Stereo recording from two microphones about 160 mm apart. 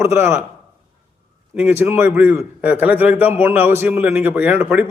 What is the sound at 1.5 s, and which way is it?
A man's voice, 10° right (ahead or behind).